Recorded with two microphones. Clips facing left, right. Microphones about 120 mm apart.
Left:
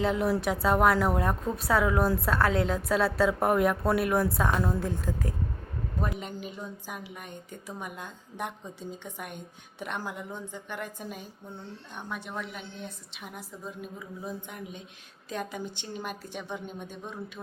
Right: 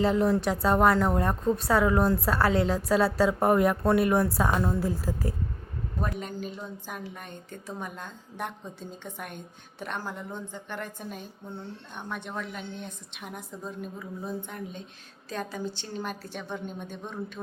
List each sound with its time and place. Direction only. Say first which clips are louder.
0.0 s speech: right 3 dB; centre (ahead or behind)
6.0 s a man's voice: right 2 dB; 20° left (ahead or behind); by 13.9 s 5° left (ahead or behind)
14.4 s a woman's voice: right 3 dB; 15° left (ahead or behind)